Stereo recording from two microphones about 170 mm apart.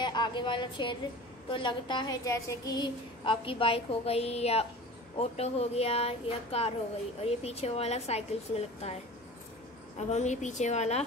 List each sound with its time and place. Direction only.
0.0 s a woman's voice: 25° left (ahead or behind)
9.9 s a woman's voice: 40° left (ahead or behind)